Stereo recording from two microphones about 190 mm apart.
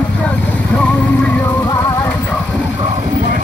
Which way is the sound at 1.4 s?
15° left (ahead or behind).